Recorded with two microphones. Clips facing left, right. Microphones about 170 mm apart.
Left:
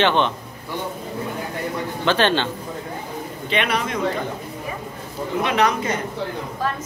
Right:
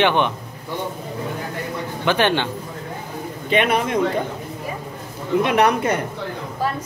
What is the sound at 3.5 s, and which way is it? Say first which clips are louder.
Speech: right 4 dB; 50° right (ahead or behind).